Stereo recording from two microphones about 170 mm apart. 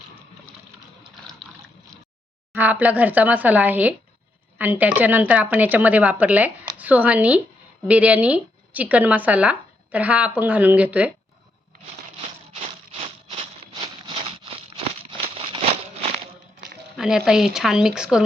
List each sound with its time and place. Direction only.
2.6 s speech: 10° right (ahead or behind)
14.2 s a sound: 35° right (ahead or behind)
17.0 s speech: 5° right (ahead or behind)